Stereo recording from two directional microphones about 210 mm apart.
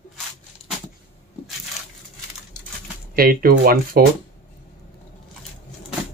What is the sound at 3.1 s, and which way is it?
Speech, 45° right (ahead or behind).